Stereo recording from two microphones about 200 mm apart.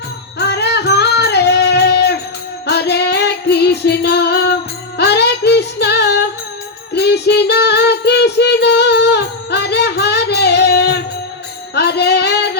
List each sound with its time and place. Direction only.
0.3 s music: 55° left (ahead or behind)
6.9 s child singing: 55° left (ahead or behind)
11.7 s music: 55° left (ahead or behind)